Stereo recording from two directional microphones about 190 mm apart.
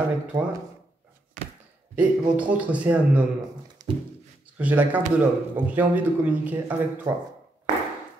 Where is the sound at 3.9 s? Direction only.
25° right (ahead or behind).